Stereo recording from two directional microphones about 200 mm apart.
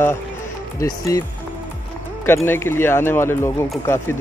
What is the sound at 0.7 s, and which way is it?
Speech, 15° left (ahead or behind).